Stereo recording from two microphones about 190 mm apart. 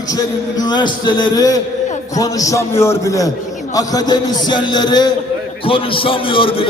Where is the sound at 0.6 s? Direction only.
25° left (ahead or behind).